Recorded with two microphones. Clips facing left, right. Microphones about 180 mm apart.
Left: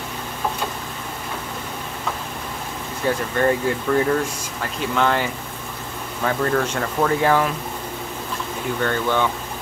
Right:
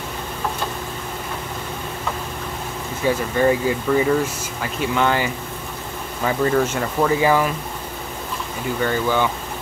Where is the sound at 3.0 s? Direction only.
5° right (ahead or behind).